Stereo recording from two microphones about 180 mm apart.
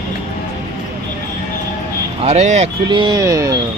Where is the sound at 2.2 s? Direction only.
35° right (ahead or behind).